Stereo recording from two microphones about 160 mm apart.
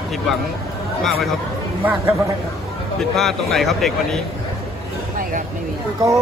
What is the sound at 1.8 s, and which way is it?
Speech, 10° right (ahead or behind).